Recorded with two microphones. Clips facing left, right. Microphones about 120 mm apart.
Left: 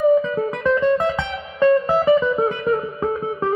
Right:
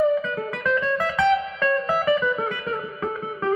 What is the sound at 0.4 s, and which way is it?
Music, 25° left (ahead or behind).